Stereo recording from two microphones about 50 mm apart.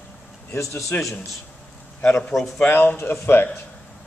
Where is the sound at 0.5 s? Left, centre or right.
Left.